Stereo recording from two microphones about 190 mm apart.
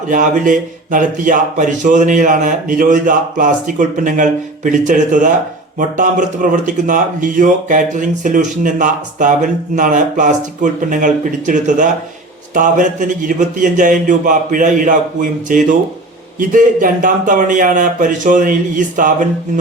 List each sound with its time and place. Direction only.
0.1 s speech: 45° right (ahead or behind)